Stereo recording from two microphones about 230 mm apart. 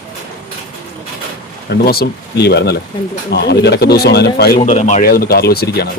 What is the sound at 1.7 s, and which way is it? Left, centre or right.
A man's voice, left.